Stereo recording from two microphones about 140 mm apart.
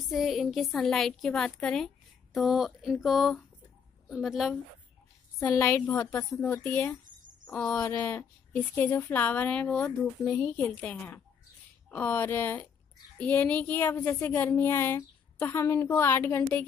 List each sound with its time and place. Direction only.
0.1 s a woman's voice: centre (ahead or behind)
5.4 s a woman's voice: 20° left (ahead or behind)